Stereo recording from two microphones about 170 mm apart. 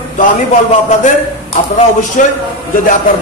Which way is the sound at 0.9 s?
45° left (ahead or behind).